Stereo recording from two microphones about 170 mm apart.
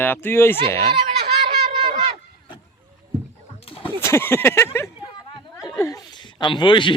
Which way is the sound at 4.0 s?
15° left (ahead or behind).